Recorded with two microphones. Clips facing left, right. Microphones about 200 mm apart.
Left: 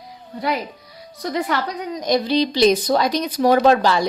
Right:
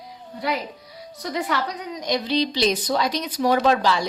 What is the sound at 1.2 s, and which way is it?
Speech, 55° left (ahead or behind).